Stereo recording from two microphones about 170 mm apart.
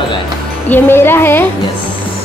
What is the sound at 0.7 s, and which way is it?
Speech, 15° left (ahead or behind).